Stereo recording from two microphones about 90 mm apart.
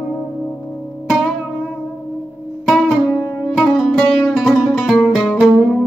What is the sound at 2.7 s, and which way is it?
Music, 5° left (ahead or behind).